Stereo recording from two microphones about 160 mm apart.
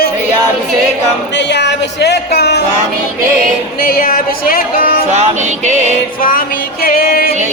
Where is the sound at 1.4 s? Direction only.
90° left.